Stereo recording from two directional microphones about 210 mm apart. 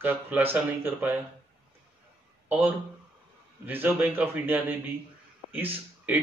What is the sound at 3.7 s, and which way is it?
A man's voice, 10° right (ahead or behind).